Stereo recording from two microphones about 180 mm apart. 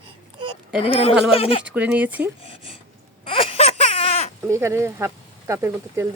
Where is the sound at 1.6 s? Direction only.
10° right (ahead or behind).